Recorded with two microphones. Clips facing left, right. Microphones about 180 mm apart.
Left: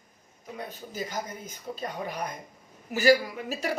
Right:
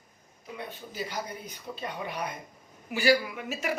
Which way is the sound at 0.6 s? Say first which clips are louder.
Left 1 dB; 40° left (ahead or behind).